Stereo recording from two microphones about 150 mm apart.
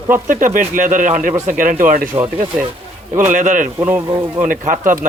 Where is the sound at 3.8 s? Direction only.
20° right (ahead or behind).